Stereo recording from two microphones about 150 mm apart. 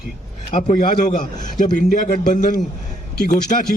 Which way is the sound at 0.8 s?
60° left (ahead or behind).